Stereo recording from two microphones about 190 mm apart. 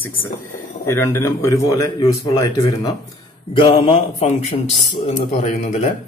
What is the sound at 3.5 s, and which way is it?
Speech, 30° left (ahead or behind).